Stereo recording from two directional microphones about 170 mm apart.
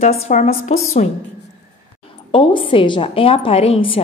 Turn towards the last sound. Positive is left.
turn(degrees=35)  # may be behind; listen again after turning